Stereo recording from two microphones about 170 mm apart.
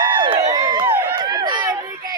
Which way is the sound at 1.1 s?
25° right (ahead or behind).